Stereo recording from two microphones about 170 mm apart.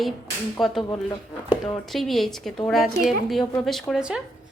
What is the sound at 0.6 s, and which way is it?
A woman's voice, centre (ahead or behind).